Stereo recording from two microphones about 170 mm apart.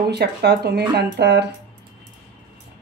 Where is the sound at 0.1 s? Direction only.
75° right (ahead or behind).